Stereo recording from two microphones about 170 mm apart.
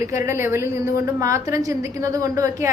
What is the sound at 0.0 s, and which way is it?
A woman's voice, 15° right (ahead or behind).